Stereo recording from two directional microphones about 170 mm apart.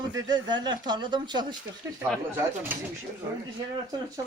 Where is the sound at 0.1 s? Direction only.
20° right (ahead or behind).